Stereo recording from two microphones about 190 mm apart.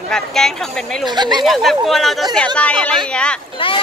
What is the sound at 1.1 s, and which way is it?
Speech, 25° right (ahead or behind).